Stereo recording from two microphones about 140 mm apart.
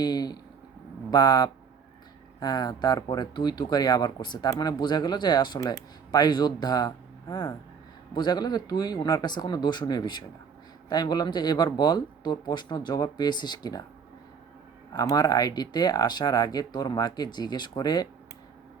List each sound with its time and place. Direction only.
0.0 s speech: 30° left (ahead or behind)
14.9 s speech: 25° left (ahead or behind)